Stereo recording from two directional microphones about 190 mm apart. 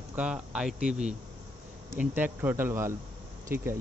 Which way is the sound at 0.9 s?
35° right (ahead or behind).